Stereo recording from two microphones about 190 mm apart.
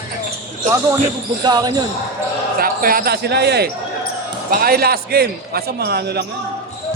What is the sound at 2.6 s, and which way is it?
A man's voice, 50° right (ahead or behind).